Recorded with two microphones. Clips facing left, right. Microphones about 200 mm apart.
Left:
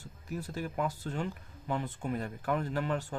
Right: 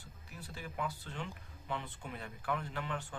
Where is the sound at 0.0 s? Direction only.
45° left (ahead or behind).